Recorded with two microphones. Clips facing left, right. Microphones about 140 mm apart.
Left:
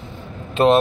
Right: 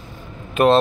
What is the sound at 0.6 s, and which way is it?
Speech, 25° left (ahead or behind).